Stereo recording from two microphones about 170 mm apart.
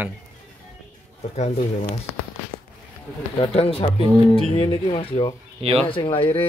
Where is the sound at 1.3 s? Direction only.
40° left (ahead or behind).